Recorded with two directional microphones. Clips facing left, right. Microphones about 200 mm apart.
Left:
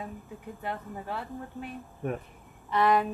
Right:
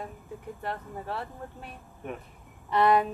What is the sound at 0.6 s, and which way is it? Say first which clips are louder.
Speech: left 1 dB; centre (ahead or behind).